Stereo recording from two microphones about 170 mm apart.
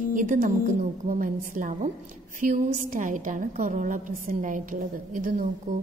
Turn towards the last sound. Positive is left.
turn(degrees=-50)  # may be behind; listen again after turning